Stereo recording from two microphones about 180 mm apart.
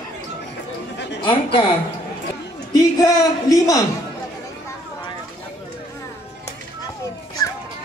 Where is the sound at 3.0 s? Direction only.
20° left (ahead or behind).